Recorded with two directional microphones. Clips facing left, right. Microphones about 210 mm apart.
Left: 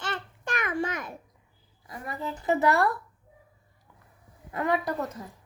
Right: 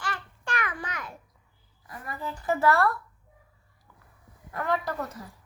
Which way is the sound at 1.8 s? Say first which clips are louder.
Left 2 dB; 20° left (ahead or behind).